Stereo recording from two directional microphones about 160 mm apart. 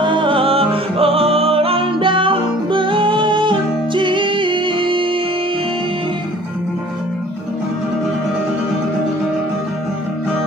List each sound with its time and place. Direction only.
0.0 s music: 30° right (ahead or behind)